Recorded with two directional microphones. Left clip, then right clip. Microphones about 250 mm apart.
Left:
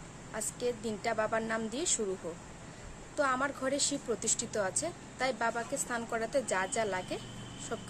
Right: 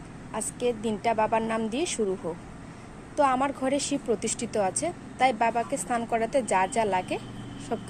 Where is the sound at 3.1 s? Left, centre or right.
Centre.